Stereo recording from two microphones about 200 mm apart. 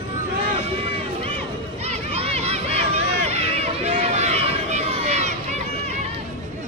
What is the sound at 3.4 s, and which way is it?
Run, 30° right (ahead or behind).